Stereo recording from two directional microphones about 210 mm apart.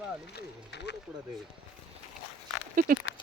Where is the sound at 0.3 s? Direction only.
55° left (ahead or behind).